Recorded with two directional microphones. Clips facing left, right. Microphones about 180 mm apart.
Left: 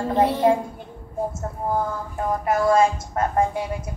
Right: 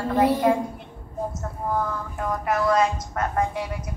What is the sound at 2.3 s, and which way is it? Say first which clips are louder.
Speech: left 3 dB; 25° left (ahead or behind).